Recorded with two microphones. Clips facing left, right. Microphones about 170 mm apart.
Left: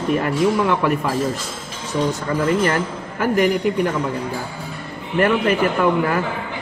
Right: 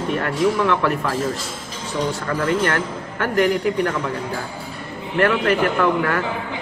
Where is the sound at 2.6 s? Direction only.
10° left (ahead or behind).